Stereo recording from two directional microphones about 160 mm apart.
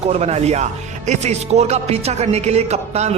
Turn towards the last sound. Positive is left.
turn(degrees=-45)  # may be behind; listen again after turning